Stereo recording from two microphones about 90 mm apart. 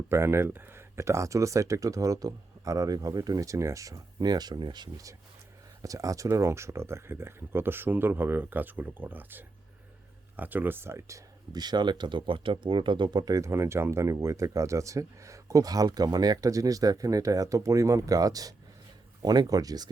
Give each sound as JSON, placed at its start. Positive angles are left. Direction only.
{"t": 0.1, "sound": "speech", "side_deg": -30}
{"t": 5.8, "sound": "speech", "side_deg": -40}
{"t": 11.5, "sound": "speech", "side_deg": -50}